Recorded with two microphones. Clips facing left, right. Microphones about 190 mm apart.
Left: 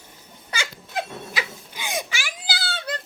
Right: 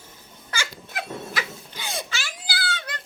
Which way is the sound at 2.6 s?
30° left (ahead or behind).